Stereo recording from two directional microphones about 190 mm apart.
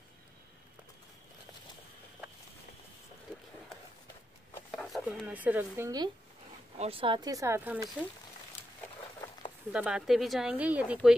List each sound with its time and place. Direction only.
4.7 s speech: centre (ahead or behind); by 6.0 s 15° right (ahead or behind)
6.8 s speech: 30° right (ahead or behind); by 7.9 s 10° right (ahead or behind)
9.7 s speech: 5° right (ahead or behind)